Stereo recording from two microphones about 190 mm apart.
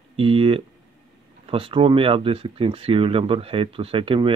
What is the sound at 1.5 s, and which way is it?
Speech, 30° right (ahead or behind).